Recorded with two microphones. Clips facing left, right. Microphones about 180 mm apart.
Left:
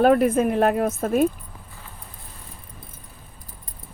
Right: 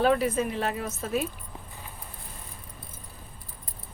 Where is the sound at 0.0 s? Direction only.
55° left (ahead or behind).